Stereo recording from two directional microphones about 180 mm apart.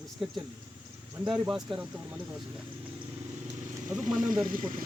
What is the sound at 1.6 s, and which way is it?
Speech, 25° right (ahead or behind).